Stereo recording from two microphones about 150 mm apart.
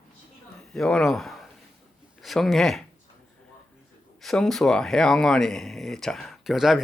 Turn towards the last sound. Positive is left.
turn(degrees=0)  # may be behind; listen again after turning